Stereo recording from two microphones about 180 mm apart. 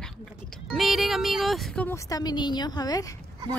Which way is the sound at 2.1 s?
20° left (ahead or behind).